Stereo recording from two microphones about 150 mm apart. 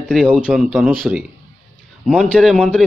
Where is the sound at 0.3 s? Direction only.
5° right (ahead or behind).